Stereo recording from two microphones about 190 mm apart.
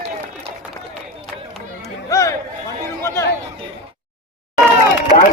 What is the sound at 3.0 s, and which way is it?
Chatter, 15° left (ahead or behind).